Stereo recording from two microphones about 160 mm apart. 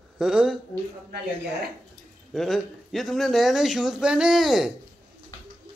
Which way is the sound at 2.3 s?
Centre (ahead or behind).